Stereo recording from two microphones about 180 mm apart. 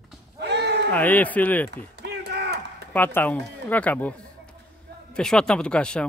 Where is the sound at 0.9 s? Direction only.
10° left (ahead or behind).